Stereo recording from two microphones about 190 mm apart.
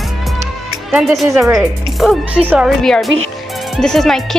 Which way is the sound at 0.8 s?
Centre (ahead or behind).